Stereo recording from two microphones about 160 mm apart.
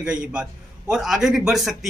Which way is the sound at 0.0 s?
5° right (ahead or behind).